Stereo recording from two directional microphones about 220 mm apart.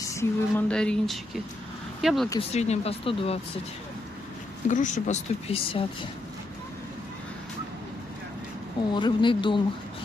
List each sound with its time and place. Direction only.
0.0 s speech: 15° left (ahead or behind)
2.5 s speech: 30° left (ahead or behind)
4.6 s speech: 35° left (ahead or behind)
8.9 s speech: 20° left (ahead or behind)